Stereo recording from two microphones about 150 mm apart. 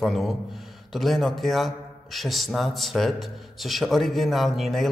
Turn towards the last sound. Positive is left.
turn(degrees=0)  # may be behind; listen again after turning